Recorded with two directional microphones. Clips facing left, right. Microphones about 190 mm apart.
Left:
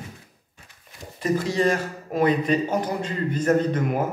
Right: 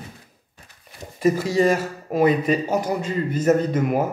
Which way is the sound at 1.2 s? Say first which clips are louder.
Right 4 dB; 10° right (ahead or behind).